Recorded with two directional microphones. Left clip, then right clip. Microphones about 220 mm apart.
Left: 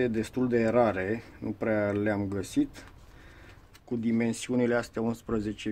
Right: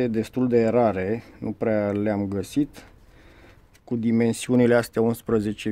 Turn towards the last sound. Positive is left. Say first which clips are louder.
# right 8 dB
turn(degrees=-40)  # may be behind; listen again after turning